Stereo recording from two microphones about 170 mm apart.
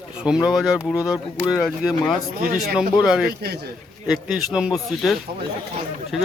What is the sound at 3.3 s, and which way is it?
Speech, 70° right (ahead or behind).